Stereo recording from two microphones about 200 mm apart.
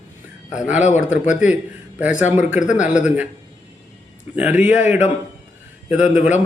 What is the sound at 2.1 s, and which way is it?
Speech, 40° left (ahead or behind).